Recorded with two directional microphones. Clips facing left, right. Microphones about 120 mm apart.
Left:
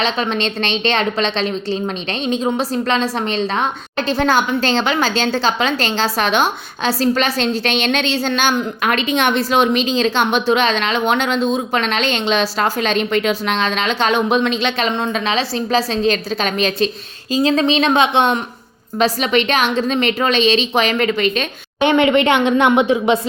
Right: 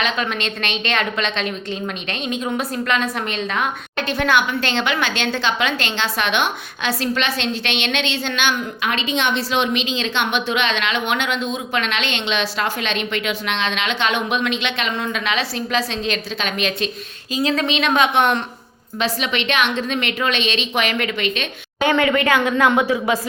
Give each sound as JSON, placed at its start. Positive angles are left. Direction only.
{"t": 0.0, "sound": "a woman's voice", "side_deg": 30}
{"t": 18.9, "sound": "a woman's voice", "side_deg": 40}
{"t": 21.8, "sound": "speech", "side_deg": 20}